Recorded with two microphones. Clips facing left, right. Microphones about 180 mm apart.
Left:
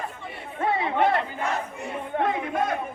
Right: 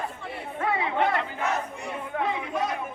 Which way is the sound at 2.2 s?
50° left (ahead or behind).